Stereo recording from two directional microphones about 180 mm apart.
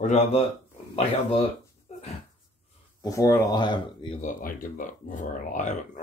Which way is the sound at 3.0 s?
20° left (ahead or behind).